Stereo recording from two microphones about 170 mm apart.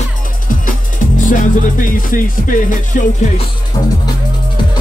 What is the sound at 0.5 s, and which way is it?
Music, 50° left (ahead or behind).